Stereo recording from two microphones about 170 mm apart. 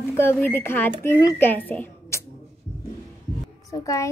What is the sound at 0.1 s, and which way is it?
A woman's voice, 15° left (ahead or behind).